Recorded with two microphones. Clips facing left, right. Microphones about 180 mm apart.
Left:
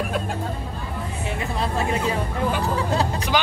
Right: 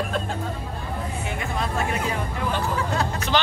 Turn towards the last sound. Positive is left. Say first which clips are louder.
# left 2 dB
turn(degrees=30)  # may be behind; listen again after turning